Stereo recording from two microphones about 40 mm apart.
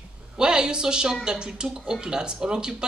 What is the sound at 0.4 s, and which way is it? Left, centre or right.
A man's voice, right.